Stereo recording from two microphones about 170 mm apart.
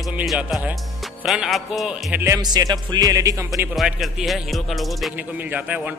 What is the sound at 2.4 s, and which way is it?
A man's voice, 20° right (ahead or behind).